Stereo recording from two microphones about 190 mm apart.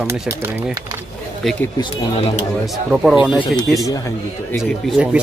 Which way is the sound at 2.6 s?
Centre (ahead or behind).